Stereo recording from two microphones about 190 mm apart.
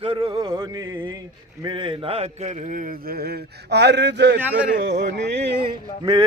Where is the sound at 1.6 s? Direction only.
25° right (ahead or behind); by 5.0 s 65° right (ahead or behind).